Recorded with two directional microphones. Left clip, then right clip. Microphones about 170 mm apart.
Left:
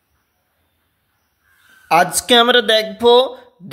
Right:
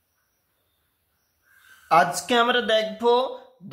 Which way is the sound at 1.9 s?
40° left (ahead or behind).